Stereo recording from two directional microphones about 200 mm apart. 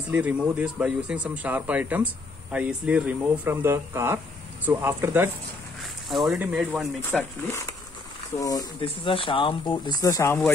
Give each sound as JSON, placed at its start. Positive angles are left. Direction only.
{"t": 0.1, "sound": "speech", "side_deg": -5}
{"t": 5.8, "sound": "speech", "side_deg": 0}
{"t": 7.0, "sound": "speech", "side_deg": 10}